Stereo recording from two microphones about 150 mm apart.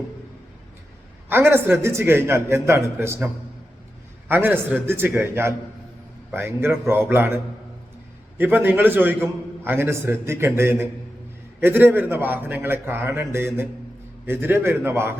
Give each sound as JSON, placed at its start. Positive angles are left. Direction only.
{"t": 1.3, "sound": "a man's voice", "side_deg": -15}
{"t": 4.3, "sound": "a man's voice", "side_deg": -15}
{"t": 8.4, "sound": "a man's voice", "side_deg": -15}